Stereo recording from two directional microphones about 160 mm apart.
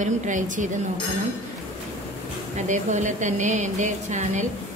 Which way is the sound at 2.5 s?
50° right (ahead or behind).